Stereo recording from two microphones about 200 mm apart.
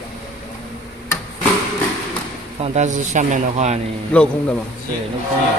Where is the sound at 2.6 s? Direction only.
35° right (ahead or behind).